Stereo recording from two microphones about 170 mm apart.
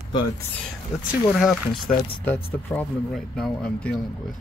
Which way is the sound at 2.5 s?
10° left (ahead or behind).